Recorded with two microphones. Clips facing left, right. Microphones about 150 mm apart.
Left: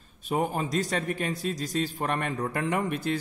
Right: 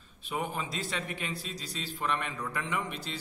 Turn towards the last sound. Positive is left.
turn(degrees=50)  # may be behind; listen again after turning